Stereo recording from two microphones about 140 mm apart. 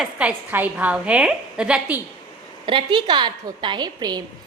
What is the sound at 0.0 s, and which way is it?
A woman's voice, 10° right (ahead or behind).